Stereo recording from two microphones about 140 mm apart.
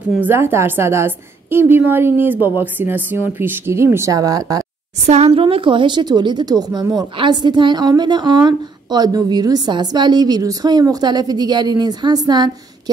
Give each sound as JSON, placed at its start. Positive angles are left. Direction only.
{"t": 0.2, "sound": "speech", "side_deg": -15}
{"t": 5.0, "sound": "speech", "side_deg": -50}